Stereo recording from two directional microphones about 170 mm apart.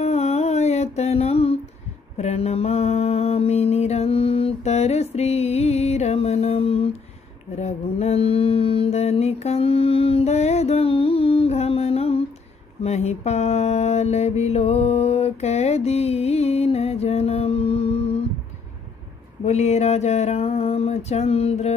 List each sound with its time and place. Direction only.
0.0 s music: 40° left (ahead or behind)
2.1 s mantra: 40° left (ahead or behind)
19.4 s a sound: 40° left (ahead or behind)